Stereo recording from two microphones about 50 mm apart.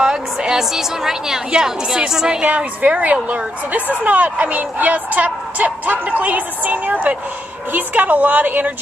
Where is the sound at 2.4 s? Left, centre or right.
Right.